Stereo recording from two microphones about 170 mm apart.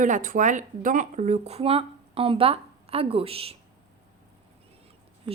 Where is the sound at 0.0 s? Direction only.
50° right (ahead or behind); by 3.5 s 35° right (ahead or behind).